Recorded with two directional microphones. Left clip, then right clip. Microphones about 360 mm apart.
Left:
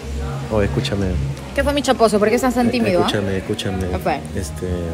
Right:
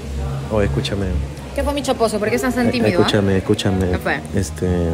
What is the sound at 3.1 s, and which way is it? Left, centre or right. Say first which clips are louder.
Speech: right 4 dB; centre.